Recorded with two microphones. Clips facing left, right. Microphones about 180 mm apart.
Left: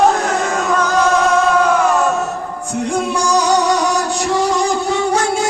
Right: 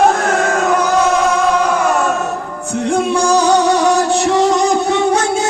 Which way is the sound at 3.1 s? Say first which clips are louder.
Right 2 dB; 25° right (ahead or behind).